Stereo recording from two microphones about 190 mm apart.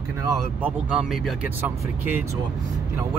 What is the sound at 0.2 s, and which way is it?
Speech, 10° right (ahead or behind).